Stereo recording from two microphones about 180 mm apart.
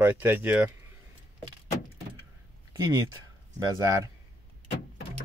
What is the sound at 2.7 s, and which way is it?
Speech, 20° right (ahead or behind).